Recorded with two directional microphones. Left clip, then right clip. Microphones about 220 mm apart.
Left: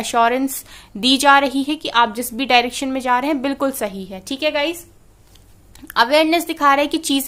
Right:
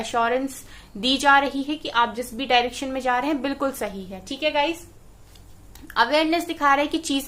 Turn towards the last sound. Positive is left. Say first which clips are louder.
# left 4 dB
turn(degrees=40)  # may be behind; listen again after turning